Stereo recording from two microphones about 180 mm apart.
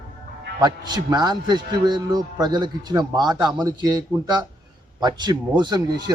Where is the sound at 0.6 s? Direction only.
25° right (ahead or behind).